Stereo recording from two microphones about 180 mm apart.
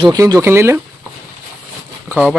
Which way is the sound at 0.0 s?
20° right (ahead or behind).